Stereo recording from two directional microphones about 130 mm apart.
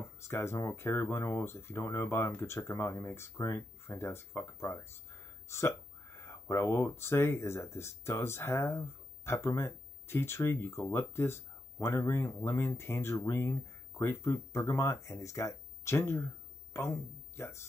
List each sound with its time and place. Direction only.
0.0 s speech: 20° left (ahead or behind)